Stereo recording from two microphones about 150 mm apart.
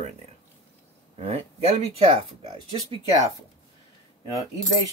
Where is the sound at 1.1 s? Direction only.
45° right (ahead or behind).